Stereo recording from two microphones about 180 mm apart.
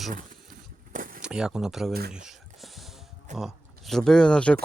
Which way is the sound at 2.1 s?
Centre (ahead or behind).